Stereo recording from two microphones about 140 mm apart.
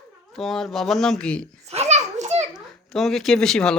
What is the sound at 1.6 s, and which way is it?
Children playing, 50° right (ahead or behind).